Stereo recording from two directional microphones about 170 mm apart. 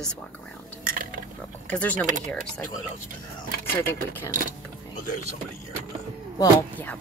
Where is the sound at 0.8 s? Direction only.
55° right (ahead or behind).